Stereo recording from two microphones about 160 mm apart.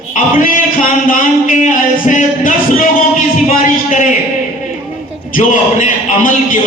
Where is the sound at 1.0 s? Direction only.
60° left (ahead or behind).